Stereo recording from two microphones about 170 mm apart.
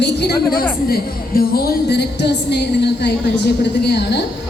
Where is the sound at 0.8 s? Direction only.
60° left (ahead or behind).